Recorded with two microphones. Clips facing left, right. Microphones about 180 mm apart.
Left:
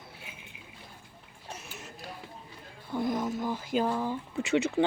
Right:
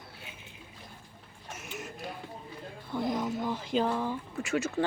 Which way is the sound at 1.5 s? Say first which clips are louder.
Left 1 dB; 30° left (ahead or behind).